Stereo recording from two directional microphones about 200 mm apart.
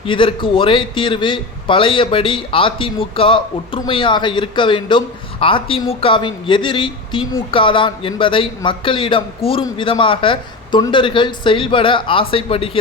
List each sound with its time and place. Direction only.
0.0 s a man's voice: 25° left (ahead or behind)